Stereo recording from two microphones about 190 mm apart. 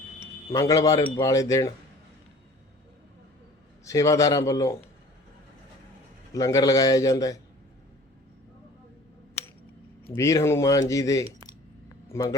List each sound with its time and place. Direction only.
0.5 s speech: 20° left (ahead or behind)
3.8 s speech: 15° left (ahead or behind)
6.3 s a man's voice: 20° left (ahead or behind)
10.2 s speech: 15° left (ahead or behind)